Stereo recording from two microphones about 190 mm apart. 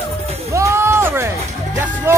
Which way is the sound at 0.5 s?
15° right (ahead or behind).